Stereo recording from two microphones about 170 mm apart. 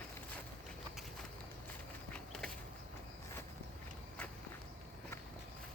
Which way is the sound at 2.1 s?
5° left (ahead or behind).